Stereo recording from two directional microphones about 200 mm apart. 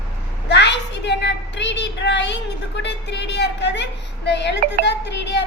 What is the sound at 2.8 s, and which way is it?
A child's voice, 60° left (ahead or behind).